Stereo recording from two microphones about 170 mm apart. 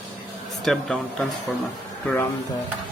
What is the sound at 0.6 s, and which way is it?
Speech, centre (ahead or behind).